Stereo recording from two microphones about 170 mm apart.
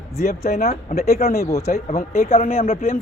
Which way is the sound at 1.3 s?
20° left (ahead or behind).